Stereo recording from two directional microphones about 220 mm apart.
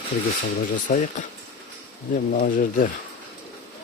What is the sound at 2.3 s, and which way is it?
Speech, 40° left (ahead or behind).